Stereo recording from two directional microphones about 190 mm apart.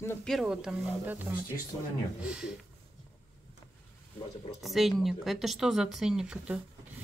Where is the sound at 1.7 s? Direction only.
25° left (ahead or behind).